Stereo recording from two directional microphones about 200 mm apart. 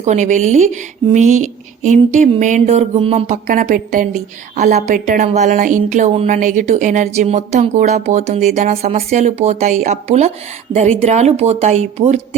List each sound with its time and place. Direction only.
0.0 s speech: 35° right (ahead or behind)